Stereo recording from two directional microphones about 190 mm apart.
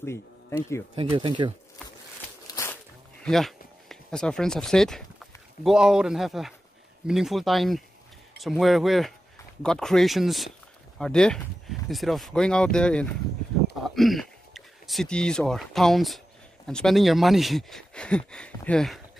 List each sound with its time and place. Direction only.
0.0 s speech: 15° left (ahead or behind)
0.9 s speech: 25° right (ahead or behind)
2.4 s a sound: 15° left (ahead or behind)
3.3 s speech: centre (ahead or behind)